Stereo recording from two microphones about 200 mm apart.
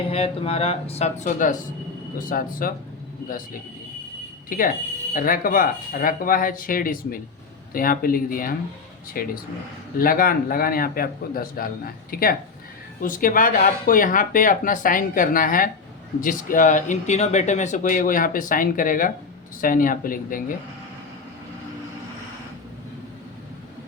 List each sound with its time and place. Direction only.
0.1 s speech: 30° left (ahead or behind); by 2.7 s 45° left (ahead or behind)
4.4 s speech: 45° left (ahead or behind)